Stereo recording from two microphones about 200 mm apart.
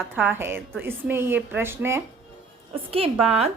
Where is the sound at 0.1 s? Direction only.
10° right (ahead or behind).